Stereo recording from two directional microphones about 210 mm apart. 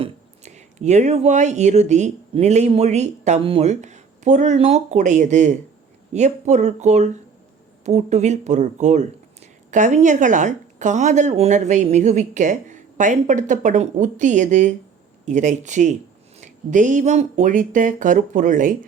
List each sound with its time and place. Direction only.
0.0 s speech: 30° right (ahead or behind)